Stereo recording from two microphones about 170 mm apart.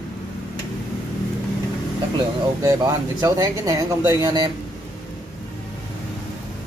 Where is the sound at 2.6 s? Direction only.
15° right (ahead or behind).